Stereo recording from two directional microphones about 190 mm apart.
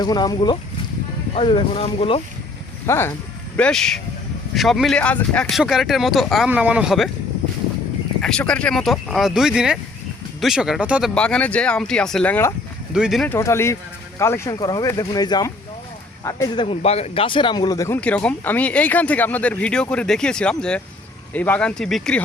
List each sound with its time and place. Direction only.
0.0 s speech: 20° left (ahead or behind)
2.8 s speech: 15° left (ahead or behind)
8.2 s speech: 5° left (ahead or behind)
11.1 s speech: 5° left (ahead or behind)
12.9 s speech: 5° right (ahead or behind)
13.3 s speech: 15° left (ahead or behind)